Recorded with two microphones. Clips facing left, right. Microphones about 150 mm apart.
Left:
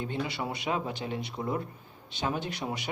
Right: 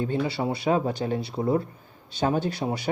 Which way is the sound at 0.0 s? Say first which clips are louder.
Right 7 dB; 35° right (ahead or behind).